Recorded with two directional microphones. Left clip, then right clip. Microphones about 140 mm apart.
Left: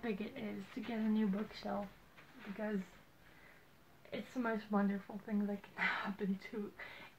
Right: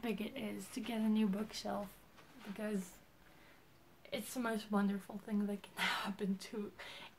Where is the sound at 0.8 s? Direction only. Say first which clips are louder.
Right 1 dB; 5° right (ahead or behind).